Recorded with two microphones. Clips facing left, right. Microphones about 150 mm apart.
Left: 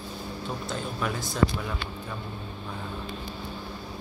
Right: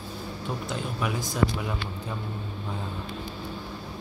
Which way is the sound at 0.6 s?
15° right (ahead or behind).